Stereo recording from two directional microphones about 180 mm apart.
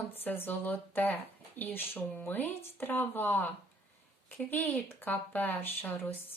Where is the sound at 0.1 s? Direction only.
10° left (ahead or behind).